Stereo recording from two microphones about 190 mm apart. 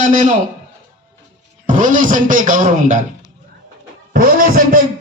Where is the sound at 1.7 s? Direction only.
45° right (ahead or behind).